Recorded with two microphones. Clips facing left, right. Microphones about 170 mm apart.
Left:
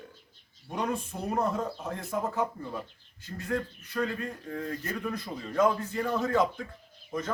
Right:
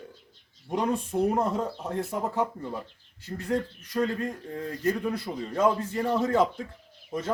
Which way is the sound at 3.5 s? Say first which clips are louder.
Right 3 dB; 35° right (ahead or behind).